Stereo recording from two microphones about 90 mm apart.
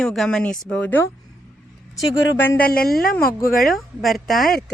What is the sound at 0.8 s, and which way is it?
Speech, 20° left (ahead or behind).